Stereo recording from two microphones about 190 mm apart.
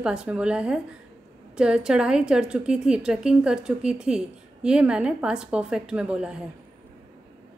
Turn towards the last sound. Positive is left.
turn(degrees=-5)  # may be behind; listen again after turning